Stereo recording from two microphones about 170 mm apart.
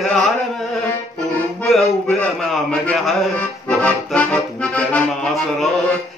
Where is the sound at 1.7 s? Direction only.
Centre (ahead or behind).